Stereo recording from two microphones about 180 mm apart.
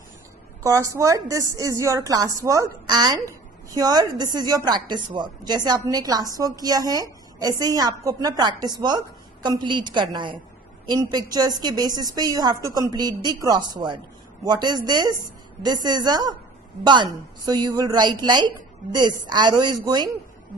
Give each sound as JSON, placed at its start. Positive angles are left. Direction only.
{"t": 0.7, "sound": "a woman's voice", "side_deg": -15}